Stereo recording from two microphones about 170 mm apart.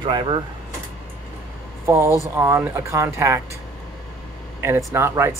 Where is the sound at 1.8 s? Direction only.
15° right (ahead or behind).